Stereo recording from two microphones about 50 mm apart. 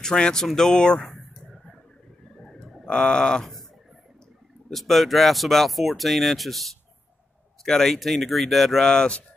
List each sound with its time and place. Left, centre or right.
0.0 s speech: centre
2.4 s bird: centre
2.8 s speech: centre
4.6 s speech: centre
8.8 s speech: centre